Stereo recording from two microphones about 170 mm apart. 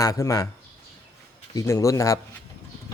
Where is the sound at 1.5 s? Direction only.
15° left (ahead or behind).